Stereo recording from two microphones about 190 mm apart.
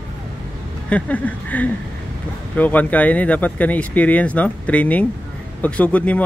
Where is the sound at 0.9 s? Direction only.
5° left (ahead or behind).